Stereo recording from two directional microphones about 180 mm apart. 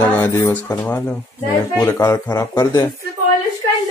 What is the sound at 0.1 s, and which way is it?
Speech, 10° left (ahead or behind).